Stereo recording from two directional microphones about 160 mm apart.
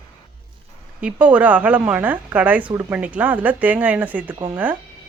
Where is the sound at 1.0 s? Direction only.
10° right (ahead or behind).